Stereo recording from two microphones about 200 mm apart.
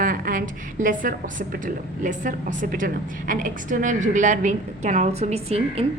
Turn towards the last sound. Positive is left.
turn(degrees=-30)  # may be behind; listen again after turning